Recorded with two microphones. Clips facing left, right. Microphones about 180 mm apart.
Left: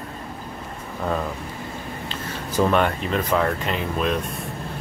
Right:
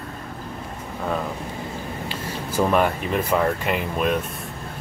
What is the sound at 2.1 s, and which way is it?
Speech, 10° right (ahead or behind).